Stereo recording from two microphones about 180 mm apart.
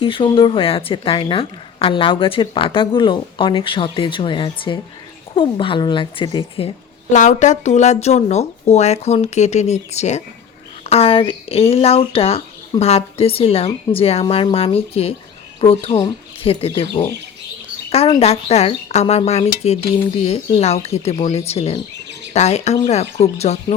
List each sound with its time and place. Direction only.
0.0 s a woman's voice: 30° left (ahead or behind)
18.2 s a woman's voice: 35° left (ahead or behind)